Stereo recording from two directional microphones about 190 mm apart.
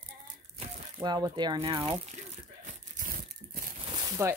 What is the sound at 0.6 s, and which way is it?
Speech, 25° right (ahead or behind).